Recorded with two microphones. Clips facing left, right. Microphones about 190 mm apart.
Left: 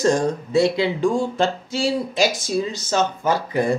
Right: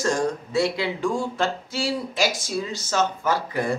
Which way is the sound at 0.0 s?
20° left (ahead or behind).